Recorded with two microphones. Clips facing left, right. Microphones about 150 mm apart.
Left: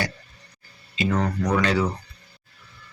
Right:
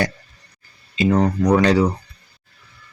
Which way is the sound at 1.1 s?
35° right (ahead or behind).